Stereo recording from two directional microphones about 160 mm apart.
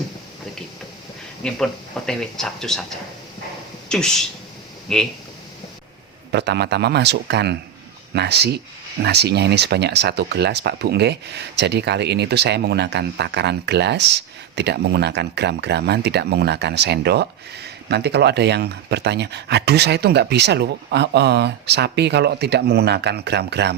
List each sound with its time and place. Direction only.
1.5 s speech: 5° left (ahead or behind)
3.8 s speech: 5° left (ahead or behind)
6.3 s speech: 90° right